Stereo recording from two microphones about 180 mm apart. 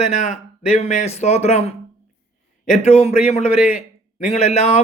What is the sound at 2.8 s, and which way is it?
A man's voice, 40° left (ahead or behind).